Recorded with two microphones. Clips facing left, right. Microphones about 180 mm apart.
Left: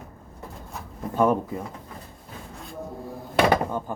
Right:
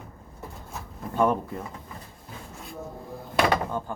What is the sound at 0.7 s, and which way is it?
Speech, 5° left (ahead or behind).